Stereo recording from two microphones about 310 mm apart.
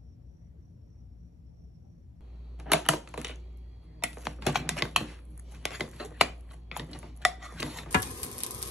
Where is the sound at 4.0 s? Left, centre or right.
Centre.